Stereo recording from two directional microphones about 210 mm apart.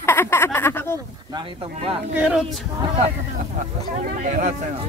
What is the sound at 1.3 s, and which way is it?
Speech, 25° right (ahead or behind).